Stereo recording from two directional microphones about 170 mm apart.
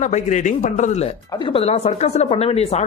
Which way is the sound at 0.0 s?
45° left (ahead or behind).